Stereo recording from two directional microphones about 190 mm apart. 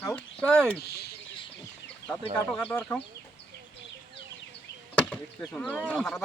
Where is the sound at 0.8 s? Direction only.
55° left (ahead or behind).